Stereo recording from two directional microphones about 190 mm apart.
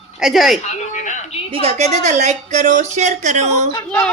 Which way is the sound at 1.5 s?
30° right (ahead or behind).